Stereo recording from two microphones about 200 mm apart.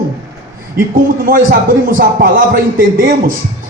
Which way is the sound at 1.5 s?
45° right (ahead or behind).